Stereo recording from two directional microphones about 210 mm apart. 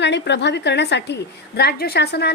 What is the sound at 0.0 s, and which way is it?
A woman's voice, 55° left (ahead or behind).